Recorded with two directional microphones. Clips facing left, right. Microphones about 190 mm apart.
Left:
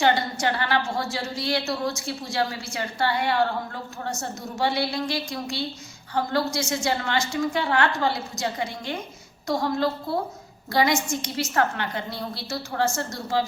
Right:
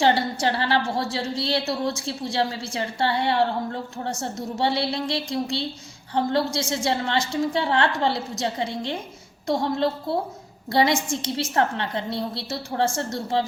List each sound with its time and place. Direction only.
0.0 s a woman's voice: 30° right (ahead or behind)